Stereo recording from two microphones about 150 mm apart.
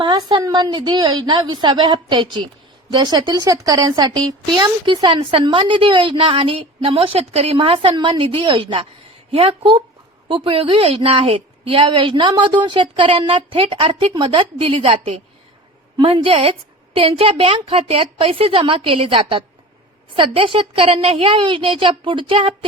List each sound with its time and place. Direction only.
0.0 s speech: 30° right (ahead or behind)